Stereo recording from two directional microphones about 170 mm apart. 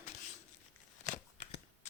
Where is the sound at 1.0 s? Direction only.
45° left (ahead or behind).